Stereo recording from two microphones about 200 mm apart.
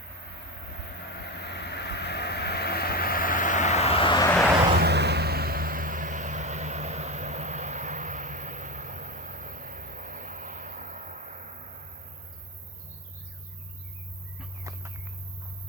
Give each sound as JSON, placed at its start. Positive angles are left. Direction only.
{"t": 1.4, "sound": "vehicle", "side_deg": 55}
{"t": 4.8, "sound": "vehicle", "side_deg": -55}
{"t": 14.6, "sound": "a sound", "side_deg": -15}